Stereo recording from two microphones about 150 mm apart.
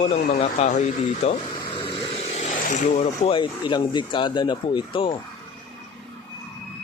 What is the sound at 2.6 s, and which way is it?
Speech, 55° left (ahead or behind).